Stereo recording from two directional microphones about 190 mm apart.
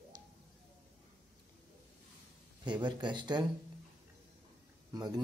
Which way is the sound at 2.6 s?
25° right (ahead or behind).